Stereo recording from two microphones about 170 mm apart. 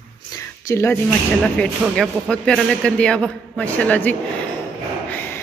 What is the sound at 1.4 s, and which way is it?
Speech, centre (ahead or behind).